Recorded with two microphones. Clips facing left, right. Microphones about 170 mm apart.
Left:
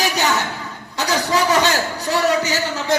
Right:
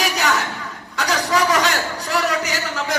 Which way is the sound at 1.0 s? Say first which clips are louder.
Left 1 dB; 25° left (ahead or behind).